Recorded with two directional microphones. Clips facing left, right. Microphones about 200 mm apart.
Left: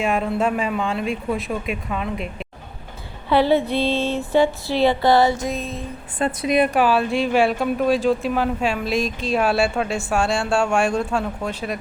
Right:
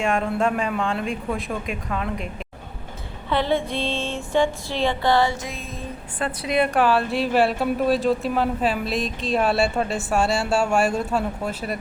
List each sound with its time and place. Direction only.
0.0 s speech: 5° left (ahead or behind)
3.7 s music: 35° left (ahead or behind)
6.1 s a woman's voice: 25° left (ahead or behind)
6.7 s speech: centre (ahead or behind)